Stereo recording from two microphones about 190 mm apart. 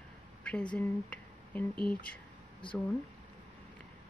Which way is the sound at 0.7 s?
10° left (ahead or behind).